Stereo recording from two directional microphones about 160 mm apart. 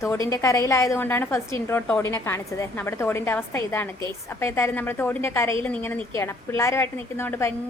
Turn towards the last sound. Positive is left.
turn(degrees=15)  # may be behind; listen again after turning